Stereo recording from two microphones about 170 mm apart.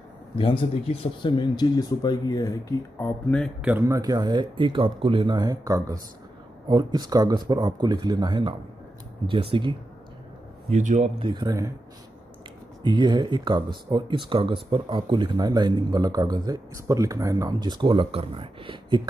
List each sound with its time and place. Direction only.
0.4 s speech: 30° left (ahead or behind)
3.0 s speech: 5° left (ahead or behind)
3.8 s speech: 20° right (ahead or behind)
10.7 s speech: 45° right (ahead or behind)
11.1 s speech: 25° right (ahead or behind)
12.8 s speech: 25° right (ahead or behind)